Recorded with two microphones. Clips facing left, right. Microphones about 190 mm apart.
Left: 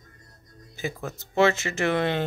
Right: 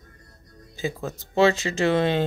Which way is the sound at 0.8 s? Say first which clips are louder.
Right 3 dB; 15° right (ahead or behind).